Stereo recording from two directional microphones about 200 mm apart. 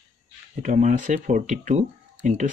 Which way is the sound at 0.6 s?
35° right (ahead or behind).